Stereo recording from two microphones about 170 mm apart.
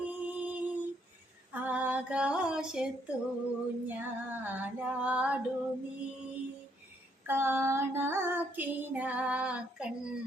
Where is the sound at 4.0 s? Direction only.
10° right (ahead or behind).